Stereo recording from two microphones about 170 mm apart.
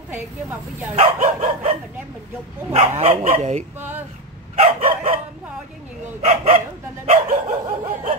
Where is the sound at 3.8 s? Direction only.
10° right (ahead or behind).